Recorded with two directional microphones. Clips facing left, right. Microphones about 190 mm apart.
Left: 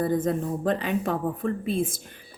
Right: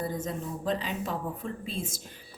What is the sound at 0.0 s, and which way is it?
A woman's voice, 55° left (ahead or behind).